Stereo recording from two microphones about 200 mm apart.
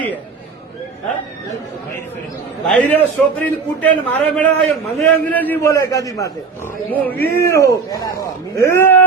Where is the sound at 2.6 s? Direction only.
5° left (ahead or behind).